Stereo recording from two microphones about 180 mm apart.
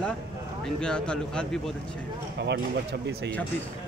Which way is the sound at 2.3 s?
70° right (ahead or behind).